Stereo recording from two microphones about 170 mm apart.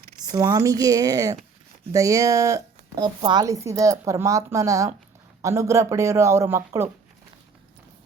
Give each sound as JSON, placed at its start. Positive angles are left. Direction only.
{"t": 0.3, "sound": "speech", "side_deg": -20}